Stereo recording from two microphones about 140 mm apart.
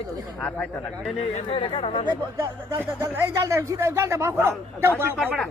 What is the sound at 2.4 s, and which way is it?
Speech, 20° right (ahead or behind).